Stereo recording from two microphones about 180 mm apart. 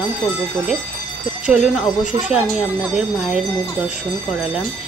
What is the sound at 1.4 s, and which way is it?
A woman's voice, 5° right (ahead or behind).